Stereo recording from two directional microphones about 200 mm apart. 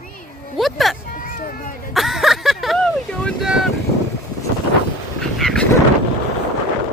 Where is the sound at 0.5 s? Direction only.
Centre (ahead or behind).